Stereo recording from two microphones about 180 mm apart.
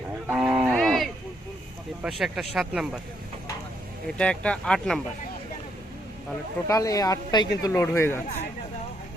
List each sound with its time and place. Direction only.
0.3 s livestock: 5° right (ahead or behind)
2.0 s speech: 5° right (ahead or behind)
4.0 s speech: 5° left (ahead or behind)
6.7 s speech: 20° left (ahead or behind)